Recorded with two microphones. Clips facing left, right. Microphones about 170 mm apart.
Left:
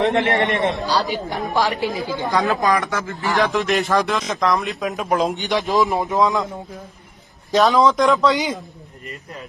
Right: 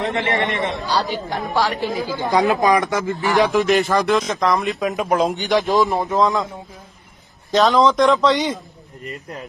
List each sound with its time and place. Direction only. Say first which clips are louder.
0.0 s a man's voice: left 3 dB; 65° left (ahead or behind)
1.1 s speech: even; 15° left (ahead or behind)
1.9 s speech: right 1 dB; centre (ahead or behind)
2.3 s a man's voice: right 3 dB; 20° right (ahead or behind)
3.5 s speech: right 2 dB; centre (ahead or behind)
6.1 s a man's voice: right 1 dB; 15° right (ahead or behind)
7.5 s speech: even; centre (ahead or behind)